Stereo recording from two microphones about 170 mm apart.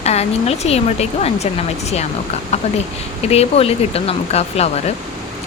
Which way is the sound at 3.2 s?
35° left (ahead or behind).